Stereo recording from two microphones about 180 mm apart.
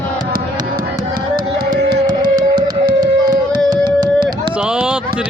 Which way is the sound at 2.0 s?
20° right (ahead or behind).